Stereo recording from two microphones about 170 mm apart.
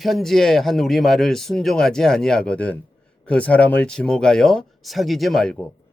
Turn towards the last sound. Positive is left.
turn(degrees=5)  # may be behind; listen again after turning